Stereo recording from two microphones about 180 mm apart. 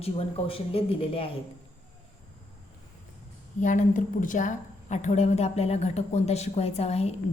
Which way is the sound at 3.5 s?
45° left (ahead or behind).